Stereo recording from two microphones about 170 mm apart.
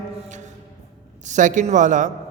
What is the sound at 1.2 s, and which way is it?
Speech, 45° right (ahead or behind).